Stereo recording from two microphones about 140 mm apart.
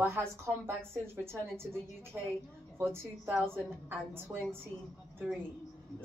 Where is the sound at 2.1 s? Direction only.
15° right (ahead or behind).